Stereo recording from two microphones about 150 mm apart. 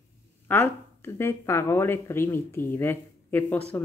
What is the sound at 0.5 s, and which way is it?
Speech, 15° left (ahead or behind).